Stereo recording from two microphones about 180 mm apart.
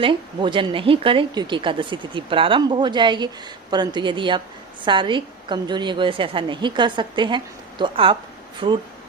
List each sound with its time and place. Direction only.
0.0 s a woman's voice: 25° right (ahead or behind)